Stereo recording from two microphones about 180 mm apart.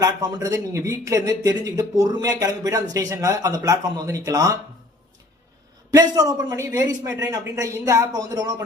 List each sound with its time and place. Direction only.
0.0 s speech: 20° right (ahead or behind)
5.9 s speech: 20° right (ahead or behind)